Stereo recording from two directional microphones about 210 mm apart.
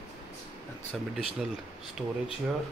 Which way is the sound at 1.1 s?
Centre (ahead or behind).